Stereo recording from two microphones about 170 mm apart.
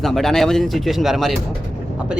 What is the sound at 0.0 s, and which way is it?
A man's voice, centre (ahead or behind).